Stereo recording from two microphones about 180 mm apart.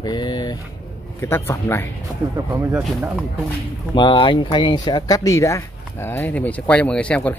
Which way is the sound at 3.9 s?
25° left (ahead or behind).